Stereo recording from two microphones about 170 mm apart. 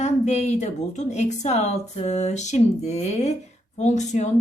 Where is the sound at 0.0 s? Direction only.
40° left (ahead or behind).